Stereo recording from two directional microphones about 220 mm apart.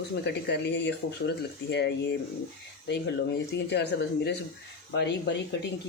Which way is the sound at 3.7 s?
50° left (ahead or behind).